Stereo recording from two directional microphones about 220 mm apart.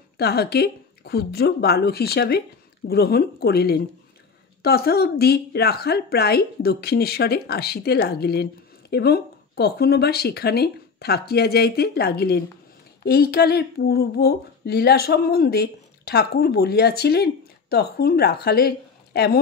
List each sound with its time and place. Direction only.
0.2 s speech: 45° left (ahead or behind)